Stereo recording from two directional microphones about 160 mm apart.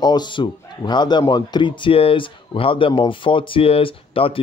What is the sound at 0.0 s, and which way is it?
Speech, 25° left (ahead or behind).